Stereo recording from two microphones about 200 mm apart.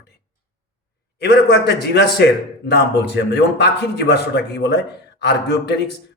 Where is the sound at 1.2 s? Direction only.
55° left (ahead or behind).